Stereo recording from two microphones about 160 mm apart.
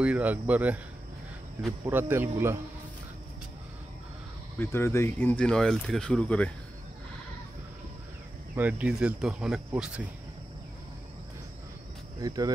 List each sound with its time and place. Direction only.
0.0 s speech: 10° right (ahead or behind)
1.9 s speech: 10° right (ahead or behind)
4.6 s speech: 15° left (ahead or behind)
8.5 s speech: 10° right (ahead or behind)
12.2 s speech: 25° right (ahead or behind)